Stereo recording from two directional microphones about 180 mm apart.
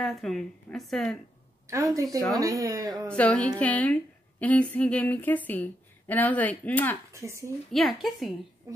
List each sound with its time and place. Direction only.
0.0 s a woman's voice: centre (ahead or behind)
1.7 s speech: 15° right (ahead or behind)
3.1 s a woman's voice: 5° left (ahead or behind)
7.1 s speech: 15° right (ahead or behind)
7.7 s a woman's voice: centre (ahead or behind)